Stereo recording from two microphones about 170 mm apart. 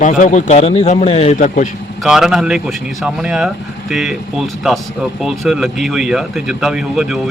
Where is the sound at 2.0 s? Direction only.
Centre (ahead or behind).